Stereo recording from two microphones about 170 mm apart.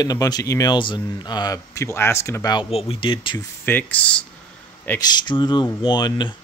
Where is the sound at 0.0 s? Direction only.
20° left (ahead or behind).